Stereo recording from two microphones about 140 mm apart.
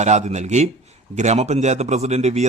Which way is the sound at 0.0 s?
55° right (ahead or behind).